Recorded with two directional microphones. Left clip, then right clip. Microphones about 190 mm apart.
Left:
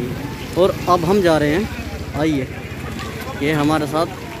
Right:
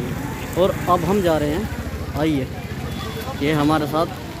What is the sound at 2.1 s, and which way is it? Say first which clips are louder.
Speech: left 2 dB; 5° left (ahead or behind).